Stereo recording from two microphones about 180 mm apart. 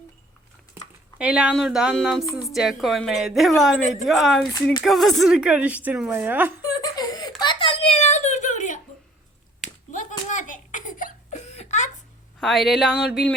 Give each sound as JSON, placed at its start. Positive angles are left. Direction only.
{"t": 1.2, "sound": "a woman's voice", "side_deg": -5}
{"t": 6.6, "sound": "whimper", "side_deg": 20}
{"t": 9.9, "sound": "a sound", "side_deg": 45}
{"t": 12.4, "sound": "a woman's voice", "side_deg": 0}